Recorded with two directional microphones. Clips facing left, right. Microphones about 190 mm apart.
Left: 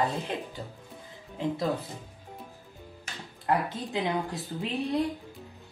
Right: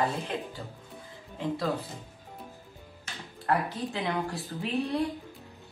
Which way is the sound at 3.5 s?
20° left (ahead or behind).